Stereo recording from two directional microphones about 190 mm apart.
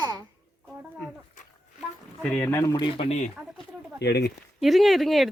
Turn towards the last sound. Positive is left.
turn(degrees=0)  # may be behind; listen again after turning